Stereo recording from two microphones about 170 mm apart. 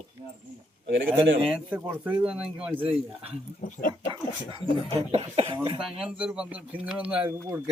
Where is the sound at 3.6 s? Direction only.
55° left (ahead or behind).